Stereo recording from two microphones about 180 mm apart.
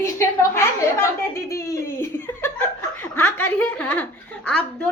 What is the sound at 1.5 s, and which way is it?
Laughter, 15° left (ahead or behind).